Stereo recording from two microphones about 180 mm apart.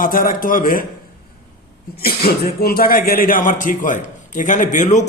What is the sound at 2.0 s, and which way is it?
Speech, 60° left (ahead or behind).